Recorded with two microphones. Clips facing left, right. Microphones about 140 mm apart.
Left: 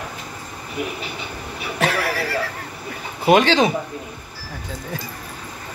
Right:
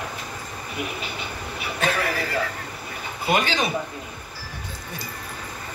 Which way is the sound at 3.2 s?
90° left.